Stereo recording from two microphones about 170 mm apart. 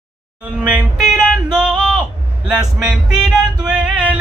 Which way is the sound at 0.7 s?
5° right (ahead or behind).